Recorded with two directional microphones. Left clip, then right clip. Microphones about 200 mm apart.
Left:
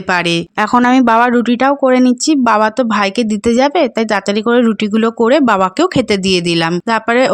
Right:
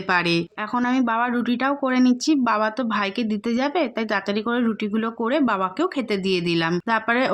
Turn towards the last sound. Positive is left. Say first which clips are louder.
# left 9 dB
turn(degrees=45)  # may be behind; listen again after turning